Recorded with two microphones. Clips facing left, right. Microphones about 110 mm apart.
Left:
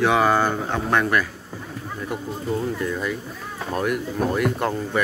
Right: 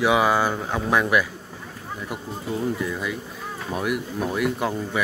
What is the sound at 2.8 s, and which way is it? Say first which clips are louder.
Speech: left 2 dB; 5° right (ahead or behind).